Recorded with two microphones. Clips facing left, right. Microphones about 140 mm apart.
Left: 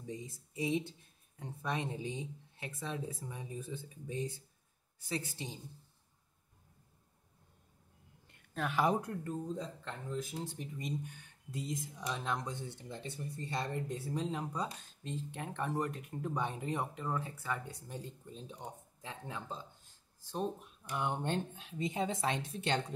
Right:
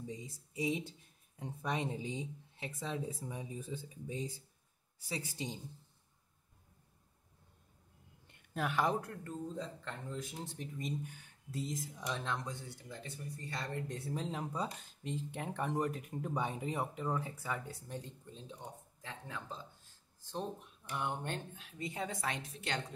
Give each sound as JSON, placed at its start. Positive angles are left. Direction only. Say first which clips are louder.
{"t": 0.1, "sound": "speech", "louder": "left 2 dB", "side_deg": -15}
{"t": 8.5, "sound": "speech", "louder": "even", "side_deg": 0}
{"t": 8.8, "sound": "speech", "louder": "left 3 dB", "side_deg": 15}
{"t": 9.8, "sound": "speech", "louder": "left 3 dB", "side_deg": 5}
{"t": 12.3, "sound": "speech", "louder": "left 2 dB", "side_deg": 20}
{"t": 13.8, "sound": "speech", "louder": "left 2 dB", "side_deg": 0}
{"t": 17.8, "sound": "speech", "louder": "even", "side_deg": 10}
{"t": 20.9, "sound": "speech", "louder": "left 4 dB", "side_deg": 15}